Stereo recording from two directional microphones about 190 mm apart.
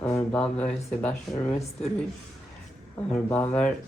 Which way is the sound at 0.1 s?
10° left (ahead or behind).